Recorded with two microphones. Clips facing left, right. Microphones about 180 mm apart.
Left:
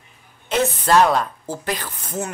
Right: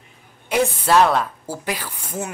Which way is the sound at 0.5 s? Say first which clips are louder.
Even; 10° right (ahead or behind).